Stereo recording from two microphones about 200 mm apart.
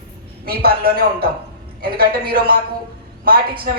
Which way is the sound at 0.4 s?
50° right (ahead or behind).